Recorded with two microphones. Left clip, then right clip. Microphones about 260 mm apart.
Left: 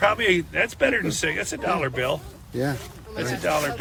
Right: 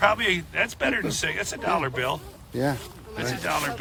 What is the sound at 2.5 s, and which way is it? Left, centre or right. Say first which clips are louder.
Speech: right 1 dB; right.